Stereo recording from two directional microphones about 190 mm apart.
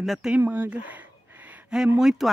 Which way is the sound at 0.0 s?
Centre (ahead or behind).